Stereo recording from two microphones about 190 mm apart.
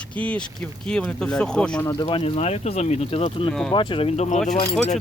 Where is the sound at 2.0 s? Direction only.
25° left (ahead or behind).